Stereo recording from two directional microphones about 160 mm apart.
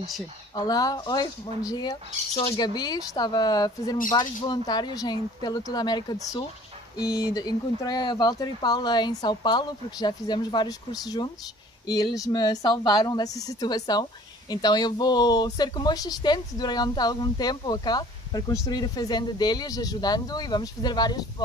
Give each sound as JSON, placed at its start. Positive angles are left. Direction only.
{"t": 0.6, "sound": "speech", "side_deg": 25}